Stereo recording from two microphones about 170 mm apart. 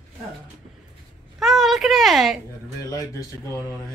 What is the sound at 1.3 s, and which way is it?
Speech, centre (ahead or behind).